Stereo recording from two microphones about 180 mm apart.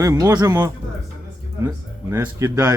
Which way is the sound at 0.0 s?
15° right (ahead or behind).